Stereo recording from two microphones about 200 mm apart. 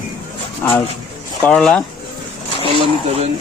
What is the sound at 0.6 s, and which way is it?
Speech, 10° left (ahead or behind).